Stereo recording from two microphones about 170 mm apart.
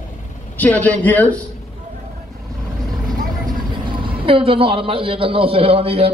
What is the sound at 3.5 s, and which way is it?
A man's voice, 30° right (ahead or behind).